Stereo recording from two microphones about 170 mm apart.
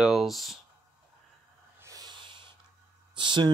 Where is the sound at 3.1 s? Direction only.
25° right (ahead or behind).